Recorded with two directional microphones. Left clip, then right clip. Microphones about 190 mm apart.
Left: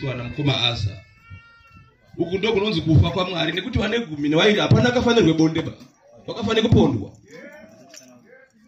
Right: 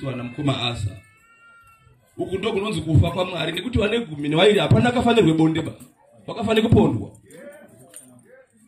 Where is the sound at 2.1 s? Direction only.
40° right (ahead or behind).